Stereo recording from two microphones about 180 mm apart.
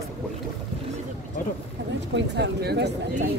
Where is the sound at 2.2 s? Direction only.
75° right (ahead or behind).